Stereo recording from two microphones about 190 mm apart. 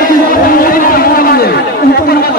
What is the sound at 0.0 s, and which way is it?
Chatter, 50° left (ahead or behind).